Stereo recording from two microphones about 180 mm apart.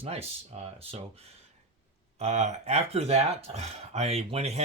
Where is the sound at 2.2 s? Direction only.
40° right (ahead or behind).